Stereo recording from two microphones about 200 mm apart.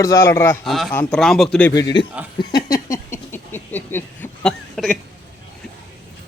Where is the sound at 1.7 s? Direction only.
20° left (ahead or behind).